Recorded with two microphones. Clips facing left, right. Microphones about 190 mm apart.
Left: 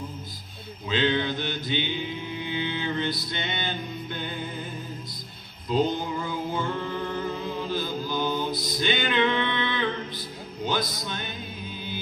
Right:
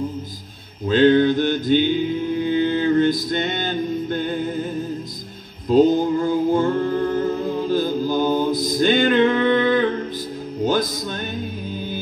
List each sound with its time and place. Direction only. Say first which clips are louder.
0.8 s mantra: right 11 dB; 45° right (ahead or behind)
2.4 s music: right 11 dB; 45° right (ahead or behind)
5.7 s music: right 10 dB; 45° right (ahead or behind)